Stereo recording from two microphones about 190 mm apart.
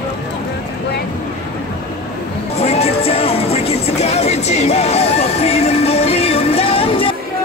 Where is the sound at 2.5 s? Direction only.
35° left (ahead or behind).